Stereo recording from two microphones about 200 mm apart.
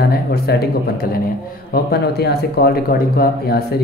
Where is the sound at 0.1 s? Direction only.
50° left (ahead or behind).